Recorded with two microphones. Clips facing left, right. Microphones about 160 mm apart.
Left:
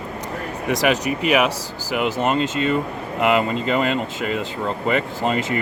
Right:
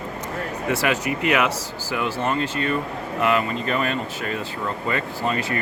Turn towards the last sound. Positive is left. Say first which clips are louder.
# left 3 dB
turn(degrees=20)  # may be behind; listen again after turning